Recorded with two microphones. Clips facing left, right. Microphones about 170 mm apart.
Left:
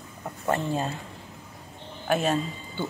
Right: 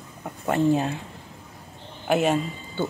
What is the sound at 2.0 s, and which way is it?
Speech, 15° right (ahead or behind).